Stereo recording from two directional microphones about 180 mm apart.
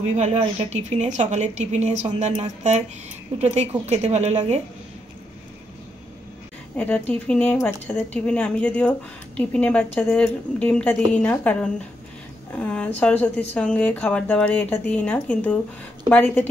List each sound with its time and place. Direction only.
0.0 s speech: 40° right (ahead or behind)
6.8 s speech: 10° left (ahead or behind)